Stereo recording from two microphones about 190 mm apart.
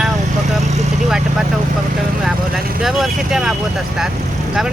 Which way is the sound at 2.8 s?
Centre (ahead or behind).